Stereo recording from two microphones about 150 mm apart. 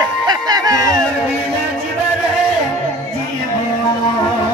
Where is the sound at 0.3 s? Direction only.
25° right (ahead or behind).